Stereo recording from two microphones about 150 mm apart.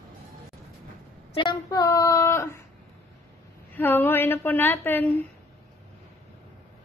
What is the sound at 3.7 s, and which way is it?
A woman's voice, 15° left (ahead or behind).